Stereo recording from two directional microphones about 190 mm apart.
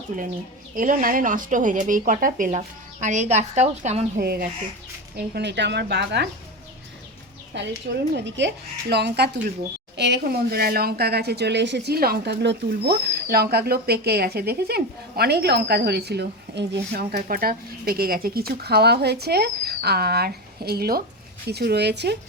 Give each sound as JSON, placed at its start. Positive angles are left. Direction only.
{"t": 0.1, "sound": "speech", "side_deg": -40}
{"t": 4.2, "sound": "speech", "side_deg": -55}
{"t": 7.5, "sound": "speech", "side_deg": -70}